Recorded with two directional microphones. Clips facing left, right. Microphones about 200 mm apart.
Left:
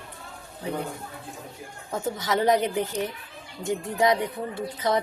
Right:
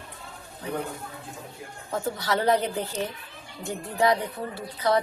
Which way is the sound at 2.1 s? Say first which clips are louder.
Left 2 dB; 15° left (ahead or behind).